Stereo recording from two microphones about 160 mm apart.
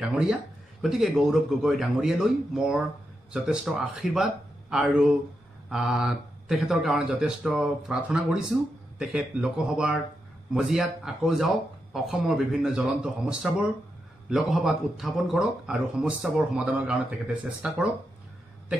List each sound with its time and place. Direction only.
0.0 s a man's voice: 5° right (ahead or behind)